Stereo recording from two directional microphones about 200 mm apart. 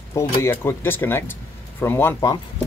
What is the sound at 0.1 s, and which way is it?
Speech, 15° left (ahead or behind).